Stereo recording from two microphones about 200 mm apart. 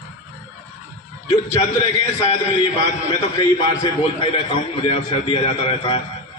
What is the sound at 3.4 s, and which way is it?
A man's voice, 25° left (ahead or behind).